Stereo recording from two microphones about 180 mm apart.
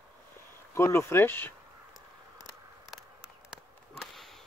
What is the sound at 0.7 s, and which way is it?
Speech, 15° left (ahead or behind).